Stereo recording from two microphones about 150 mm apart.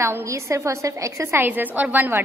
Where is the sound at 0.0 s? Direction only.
20° right (ahead or behind).